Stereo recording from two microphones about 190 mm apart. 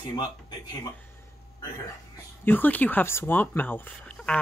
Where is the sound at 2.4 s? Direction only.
10° left (ahead or behind).